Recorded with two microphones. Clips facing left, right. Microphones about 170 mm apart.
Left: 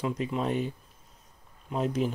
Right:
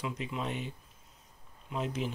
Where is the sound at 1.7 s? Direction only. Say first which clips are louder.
Left 6 dB; 40° left (ahead or behind).